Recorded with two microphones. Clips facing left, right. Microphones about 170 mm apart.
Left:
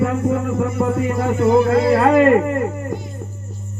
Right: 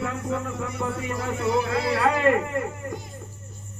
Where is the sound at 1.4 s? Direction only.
45° left (ahead or behind).